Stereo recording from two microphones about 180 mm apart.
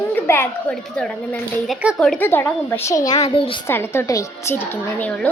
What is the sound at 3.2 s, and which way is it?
Speech, 30° left (ahead or behind).